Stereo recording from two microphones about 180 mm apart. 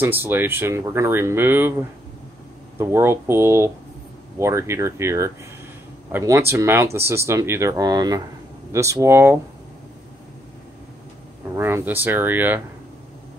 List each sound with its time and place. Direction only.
0.0 s speech: 10° right (ahead or behind)
11.5 s speech: 15° right (ahead or behind)